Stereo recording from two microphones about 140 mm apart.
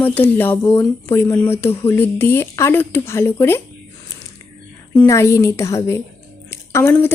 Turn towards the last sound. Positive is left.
turn(degrees=15)  # may be behind; listen again after turning